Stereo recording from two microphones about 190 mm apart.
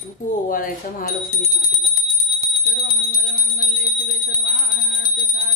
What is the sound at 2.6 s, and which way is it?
Bell, 50° left (ahead or behind).